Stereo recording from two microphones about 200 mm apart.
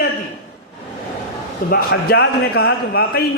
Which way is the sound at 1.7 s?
50° left (ahead or behind).